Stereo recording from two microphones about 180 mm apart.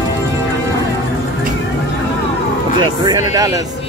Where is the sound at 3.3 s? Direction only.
20° right (ahead or behind).